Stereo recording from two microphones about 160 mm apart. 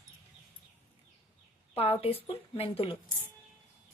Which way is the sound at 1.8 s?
35° left (ahead or behind).